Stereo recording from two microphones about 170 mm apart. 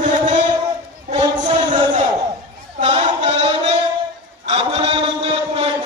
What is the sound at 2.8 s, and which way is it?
Chant, 40° right (ahead or behind).